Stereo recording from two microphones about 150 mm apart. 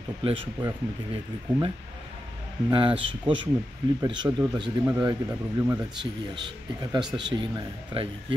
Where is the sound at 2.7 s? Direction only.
35° right (ahead or behind).